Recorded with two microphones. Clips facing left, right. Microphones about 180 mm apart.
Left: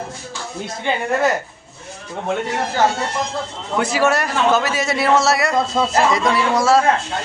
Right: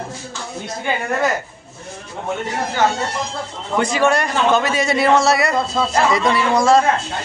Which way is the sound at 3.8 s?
5° left (ahead or behind).